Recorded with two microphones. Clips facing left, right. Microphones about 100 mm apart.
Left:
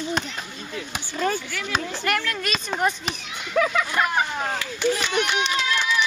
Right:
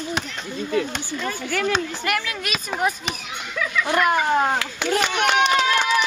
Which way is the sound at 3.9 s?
60° right (ahead or behind).